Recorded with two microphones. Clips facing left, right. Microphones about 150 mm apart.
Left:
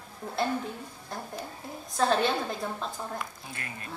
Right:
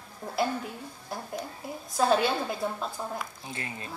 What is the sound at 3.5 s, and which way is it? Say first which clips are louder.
Speech: right 3 dB; 25° right (ahead or behind).